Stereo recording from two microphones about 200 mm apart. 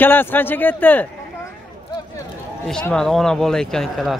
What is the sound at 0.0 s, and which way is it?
A man's voice, 10° left (ahead or behind).